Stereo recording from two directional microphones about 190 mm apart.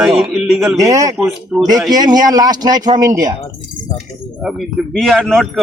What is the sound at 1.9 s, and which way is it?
A man's voice, 20° right (ahead or behind).